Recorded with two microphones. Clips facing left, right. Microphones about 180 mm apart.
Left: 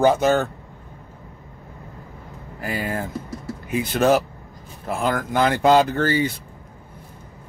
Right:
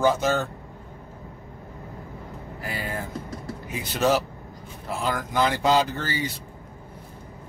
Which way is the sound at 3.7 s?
55° left (ahead or behind).